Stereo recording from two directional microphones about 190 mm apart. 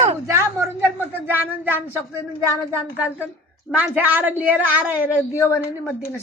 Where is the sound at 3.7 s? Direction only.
5° right (ahead or behind).